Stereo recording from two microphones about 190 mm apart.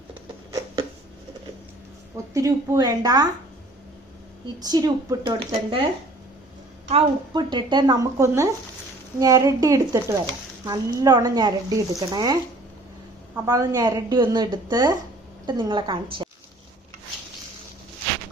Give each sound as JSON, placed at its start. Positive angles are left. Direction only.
{"t": 2.3, "sound": "speech", "side_deg": -15}
{"t": 4.6, "sound": "speech", "side_deg": -20}
{"t": 6.8, "sound": "speech", "side_deg": -25}